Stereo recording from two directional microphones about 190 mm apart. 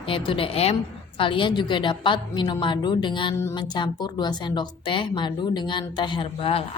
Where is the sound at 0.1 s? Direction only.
30° left (ahead or behind).